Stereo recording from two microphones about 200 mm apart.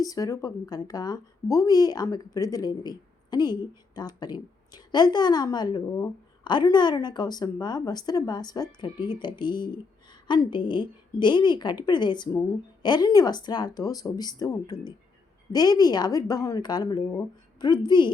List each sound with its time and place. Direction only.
0.0 s speech: 15° left (ahead or behind)